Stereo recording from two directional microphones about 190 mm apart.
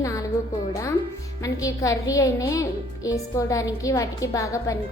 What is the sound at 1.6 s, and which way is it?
A woman's voice, 15° left (ahead or behind).